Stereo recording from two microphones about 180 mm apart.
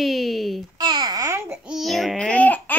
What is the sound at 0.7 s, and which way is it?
Babbling, 25° right (ahead or behind).